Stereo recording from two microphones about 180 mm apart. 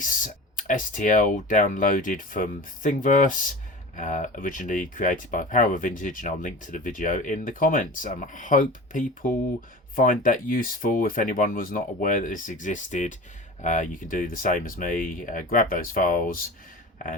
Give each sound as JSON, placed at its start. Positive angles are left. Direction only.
{"t": 0.0, "sound": "speech", "side_deg": 50}